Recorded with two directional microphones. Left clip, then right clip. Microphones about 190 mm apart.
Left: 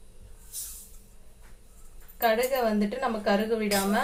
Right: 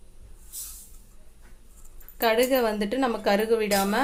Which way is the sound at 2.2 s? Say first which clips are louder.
Right 3 dB; 55° right (ahead or behind).